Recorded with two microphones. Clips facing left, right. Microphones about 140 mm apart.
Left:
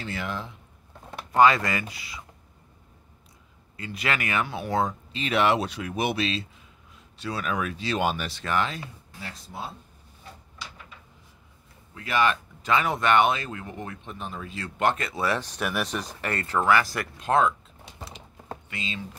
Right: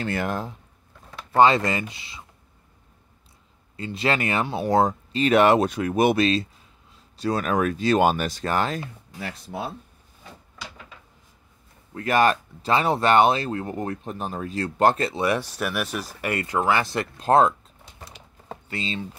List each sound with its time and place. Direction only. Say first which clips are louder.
0.0 s speech: right 6 dB; 50° right (ahead or behind)
1.3 s speech: right 2 dB; 25° right (ahead or behind)
3.7 s speech: right 5 dB; 30° right (ahead or behind)
9.2 s speech: right 6 dB; 65° right (ahead or behind)
11.9 s speech: right 4 dB; 45° right (ahead or behind); by 15.2 s 30° right (ahead or behind)
15.2 s speech: right 1 dB; 10° right (ahead or behind)
17.3 s speech: right 4 dB; 35° right (ahead or behind)
18.7 s speech: right 6 dB; 30° right (ahead or behind)